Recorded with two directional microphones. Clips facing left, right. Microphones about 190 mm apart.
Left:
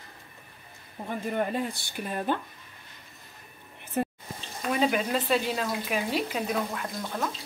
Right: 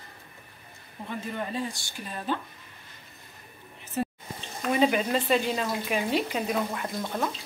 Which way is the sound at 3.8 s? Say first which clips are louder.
Left 1 dB; 55° left (ahead or behind).